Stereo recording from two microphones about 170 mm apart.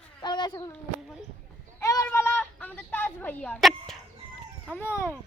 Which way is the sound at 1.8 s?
20° left (ahead or behind).